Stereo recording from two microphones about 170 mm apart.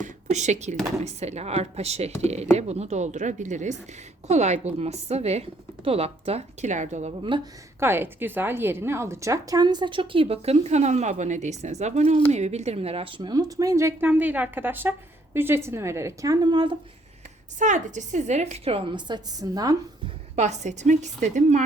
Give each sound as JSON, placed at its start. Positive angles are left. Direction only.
{"t": 0.0, "sound": "a woman's voice", "side_deg": -45}
{"t": 7.3, "sound": "a woman's voice", "side_deg": -30}
{"t": 7.8, "sound": "a woman's voice", "side_deg": -15}
{"t": 17.6, "sound": "a woman's voice", "side_deg": -45}
{"t": 20.3, "sound": "a woman's voice", "side_deg": -40}